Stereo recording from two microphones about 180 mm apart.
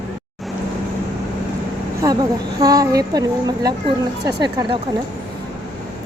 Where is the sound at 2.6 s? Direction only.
20° right (ahead or behind).